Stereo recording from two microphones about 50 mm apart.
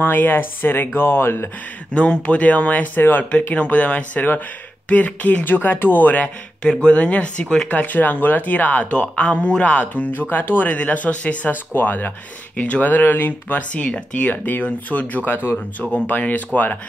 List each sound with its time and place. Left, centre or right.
0.0 s speech: left
2.0 s speech: left
3.0 s speech: left
3.3 s speech: left
6.2 s speech: centre
7.6 s speech: left
8.9 s speech: left
11.4 s speech: left
15.2 s speech: left
15.9 s speech: left